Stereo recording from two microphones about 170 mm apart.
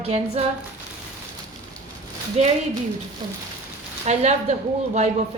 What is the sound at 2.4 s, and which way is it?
Speech, 40° right (ahead or behind).